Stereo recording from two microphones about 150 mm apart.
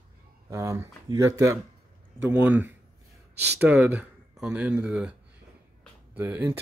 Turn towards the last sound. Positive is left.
turn(degrees=-10)  # may be behind; listen again after turning